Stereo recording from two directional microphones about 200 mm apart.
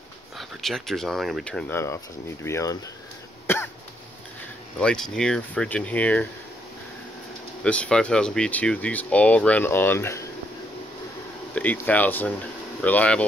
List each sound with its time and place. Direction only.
0.4 s speech: centre (ahead or behind)
3.4 s cough: 10° left (ahead or behind)
4.7 s speech: 5° left (ahead or behind)
7.6 s speech: 5° left (ahead or behind)
11.5 s speech: 10° left (ahead or behind)